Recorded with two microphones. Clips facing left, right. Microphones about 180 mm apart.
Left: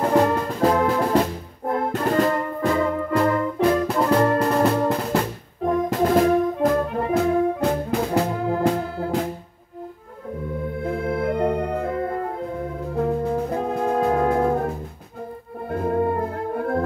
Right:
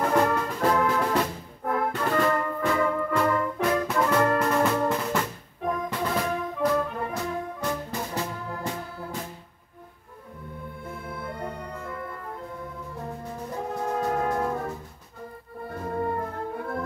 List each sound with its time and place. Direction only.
0.0 s brass instrument: 30° left (ahead or behind); by 9.3 s 70° left (ahead or behind)
10.6 s organ: 75° left (ahead or behind)
12.8 s music: 65° left (ahead or behind)
15.7 s brass instrument: 55° left (ahead or behind)